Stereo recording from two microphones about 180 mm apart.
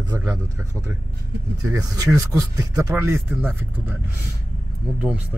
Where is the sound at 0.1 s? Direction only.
10° right (ahead or behind).